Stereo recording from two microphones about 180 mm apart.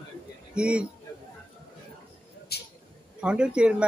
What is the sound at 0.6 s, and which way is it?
Speech, 5° right (ahead or behind).